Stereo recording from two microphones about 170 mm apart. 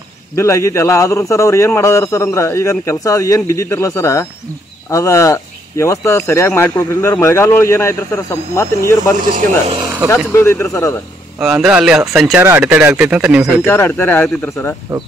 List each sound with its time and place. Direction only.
0.4 s speech: 15° left (ahead or behind)
11.3 s speech: 5° right (ahead or behind)
13.7 s speech: 10° left (ahead or behind)